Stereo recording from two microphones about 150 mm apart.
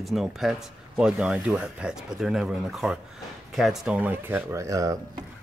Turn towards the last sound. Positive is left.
turn(degrees=-20)  # may be behind; listen again after turning